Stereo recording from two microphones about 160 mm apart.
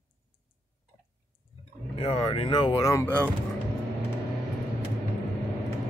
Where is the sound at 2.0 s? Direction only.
30° left (ahead or behind); by 3.3 s 15° left (ahead or behind).